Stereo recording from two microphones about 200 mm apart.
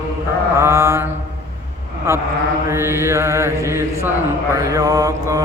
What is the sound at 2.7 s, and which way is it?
Mantra, 15° right (ahead or behind).